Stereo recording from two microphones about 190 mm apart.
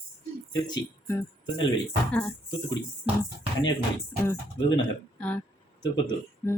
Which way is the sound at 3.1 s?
30° right (ahead or behind).